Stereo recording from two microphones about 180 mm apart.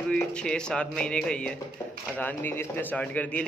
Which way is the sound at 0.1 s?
5° left (ahead or behind).